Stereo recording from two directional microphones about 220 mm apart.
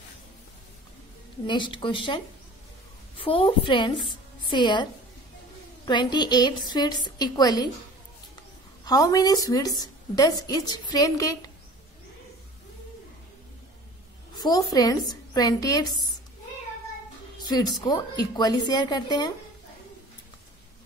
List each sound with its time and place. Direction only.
1.5 s a woman's voice: 20° left (ahead or behind)
5.9 s a woman's voice: 20° left (ahead or behind)
8.8 s a woman's voice: 15° left (ahead or behind)
14.3 s a woman's voice: 15° left (ahead or behind)
17.4 s a woman's voice: 20° left (ahead or behind)